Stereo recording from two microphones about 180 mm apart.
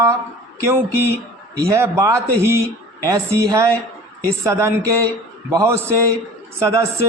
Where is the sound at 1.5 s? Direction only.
15° right (ahead or behind).